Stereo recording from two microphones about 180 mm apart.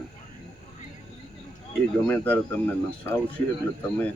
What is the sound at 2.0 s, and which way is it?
Speech, 10° left (ahead or behind).